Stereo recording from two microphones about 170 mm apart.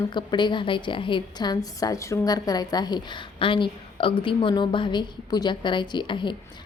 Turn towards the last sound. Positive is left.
turn(degrees=30)  # may be behind; listen again after turning